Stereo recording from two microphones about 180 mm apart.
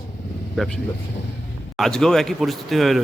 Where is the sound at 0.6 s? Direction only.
Centre (ahead or behind).